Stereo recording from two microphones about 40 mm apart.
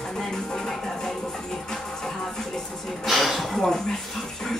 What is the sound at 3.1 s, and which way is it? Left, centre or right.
Speech, centre.